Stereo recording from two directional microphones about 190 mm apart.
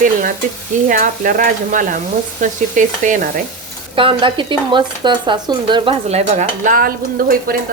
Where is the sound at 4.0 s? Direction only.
25° right (ahead or behind); by 7.5 s 50° right (ahead or behind).